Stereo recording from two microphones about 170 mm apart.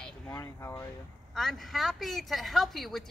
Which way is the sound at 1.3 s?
Centre (ahead or behind).